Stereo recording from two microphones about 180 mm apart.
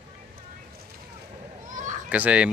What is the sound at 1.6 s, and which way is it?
Children playing, 45° right (ahead or behind).